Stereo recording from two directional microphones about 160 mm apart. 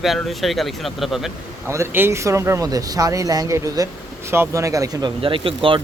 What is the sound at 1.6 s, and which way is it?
Speech, 15° right (ahead or behind).